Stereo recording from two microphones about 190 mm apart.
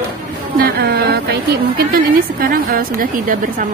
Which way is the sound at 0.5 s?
55° right (ahead or behind).